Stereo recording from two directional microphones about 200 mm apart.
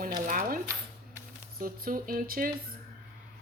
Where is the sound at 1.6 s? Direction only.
45° right (ahead or behind).